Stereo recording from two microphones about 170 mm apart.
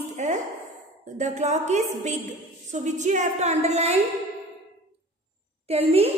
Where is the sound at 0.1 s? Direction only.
45° right (ahead or behind).